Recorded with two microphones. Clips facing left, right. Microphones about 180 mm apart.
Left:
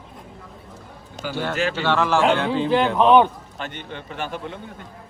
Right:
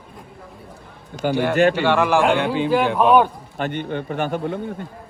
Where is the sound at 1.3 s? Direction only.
15° right (ahead or behind).